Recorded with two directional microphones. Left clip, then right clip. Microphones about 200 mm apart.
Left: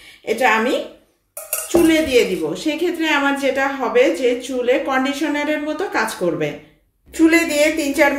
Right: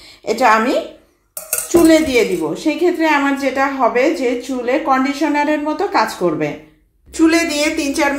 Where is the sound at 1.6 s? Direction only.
20° right (ahead or behind).